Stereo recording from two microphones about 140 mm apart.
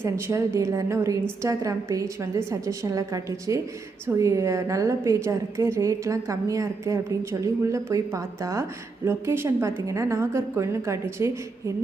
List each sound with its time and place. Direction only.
0.0 s a woman's voice: 20° right (ahead or behind)